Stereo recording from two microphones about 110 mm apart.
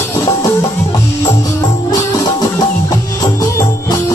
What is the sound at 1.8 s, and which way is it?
Music, 35° left (ahead or behind).